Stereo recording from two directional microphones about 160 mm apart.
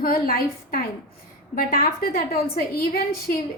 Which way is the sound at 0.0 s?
70° left (ahead or behind).